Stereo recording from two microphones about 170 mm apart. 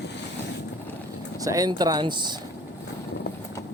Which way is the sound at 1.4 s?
20° right (ahead or behind).